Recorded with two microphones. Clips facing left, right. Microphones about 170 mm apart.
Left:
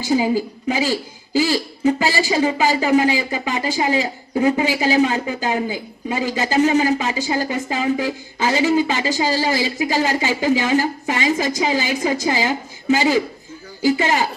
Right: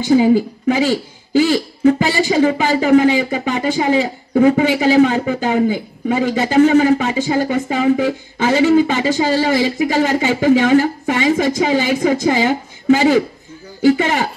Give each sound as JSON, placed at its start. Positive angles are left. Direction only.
{"t": 0.3, "sound": "speech", "side_deg": -60}